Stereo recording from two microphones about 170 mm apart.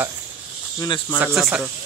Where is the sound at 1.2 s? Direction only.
5° right (ahead or behind).